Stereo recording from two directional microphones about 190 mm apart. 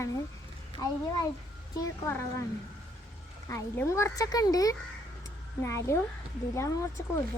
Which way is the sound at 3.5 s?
15° left (ahead or behind).